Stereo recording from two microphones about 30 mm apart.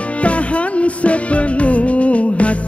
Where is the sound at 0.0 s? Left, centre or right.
Left.